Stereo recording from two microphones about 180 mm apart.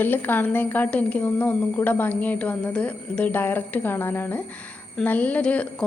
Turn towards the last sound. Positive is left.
turn(degrees=5)  # may be behind; listen again after turning